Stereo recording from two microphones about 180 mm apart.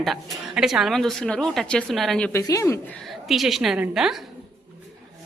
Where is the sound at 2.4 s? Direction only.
15° left (ahead or behind); by 4.3 s centre (ahead or behind).